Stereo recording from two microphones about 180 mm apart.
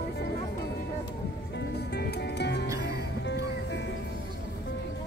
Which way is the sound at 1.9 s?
70° left (ahead or behind).